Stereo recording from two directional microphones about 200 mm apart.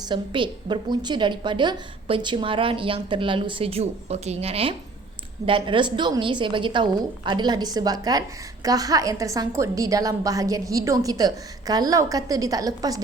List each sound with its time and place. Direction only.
0.0 s a woman's voice: 25° right (ahead or behind)